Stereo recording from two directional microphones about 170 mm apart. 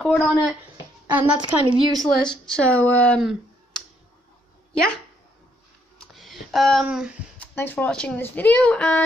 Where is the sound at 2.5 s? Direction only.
10° left (ahead or behind).